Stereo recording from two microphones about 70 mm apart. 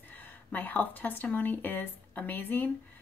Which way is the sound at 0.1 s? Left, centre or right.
Left.